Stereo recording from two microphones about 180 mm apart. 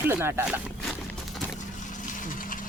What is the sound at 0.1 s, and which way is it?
Speech, 15° right (ahead or behind).